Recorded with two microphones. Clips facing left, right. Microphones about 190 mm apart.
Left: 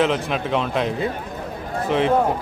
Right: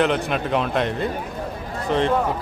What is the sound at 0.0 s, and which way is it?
Speech, centre (ahead or behind).